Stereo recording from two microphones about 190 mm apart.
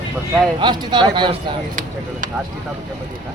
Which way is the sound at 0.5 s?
25° right (ahead or behind).